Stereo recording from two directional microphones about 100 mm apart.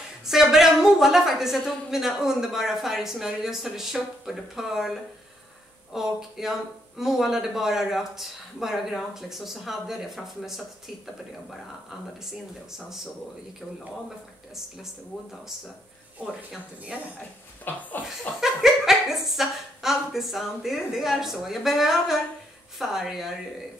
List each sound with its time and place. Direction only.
0.2 s a woman's voice: 5° right (ahead or behind)
5.9 s a woman's voice: 5° right (ahead or behind)
12.3 s a woman's voice: 5° right (ahead or behind)
17.6 s speech: 20° left (ahead or behind)
18.4 s a woman's voice: 5° right (ahead or behind)